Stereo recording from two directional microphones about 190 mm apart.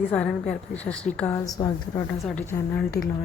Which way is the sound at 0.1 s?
5° left (ahead or behind).